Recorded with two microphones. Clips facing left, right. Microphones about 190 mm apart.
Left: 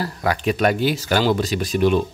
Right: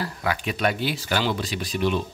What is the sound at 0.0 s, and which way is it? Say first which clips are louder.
Speech: left 5 dB; 40° left (ahead or behind).